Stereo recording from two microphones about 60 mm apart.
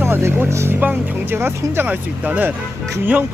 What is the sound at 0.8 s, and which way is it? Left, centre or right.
Speech, right.